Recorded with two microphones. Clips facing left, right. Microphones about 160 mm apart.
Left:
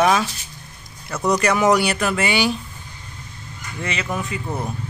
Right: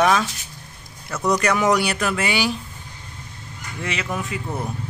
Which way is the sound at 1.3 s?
5° left (ahead or behind).